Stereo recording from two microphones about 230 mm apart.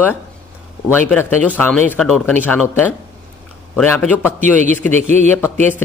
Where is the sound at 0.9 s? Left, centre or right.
Centre.